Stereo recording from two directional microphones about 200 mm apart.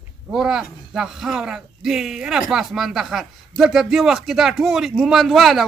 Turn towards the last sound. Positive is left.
turn(degrees=0)  # may be behind; listen again after turning